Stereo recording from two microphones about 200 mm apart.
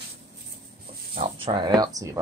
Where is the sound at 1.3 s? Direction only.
25° right (ahead or behind).